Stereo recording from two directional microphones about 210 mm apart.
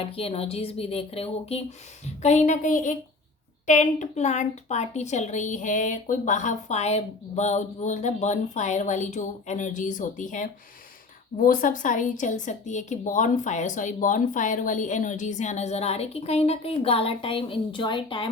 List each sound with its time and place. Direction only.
0.0 s a woman's voice: 25° left (ahead or behind)